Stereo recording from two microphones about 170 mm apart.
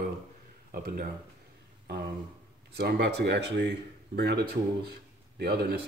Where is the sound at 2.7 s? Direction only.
80° right.